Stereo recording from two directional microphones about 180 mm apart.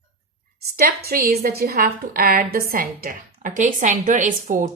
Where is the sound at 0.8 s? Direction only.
55° right (ahead or behind).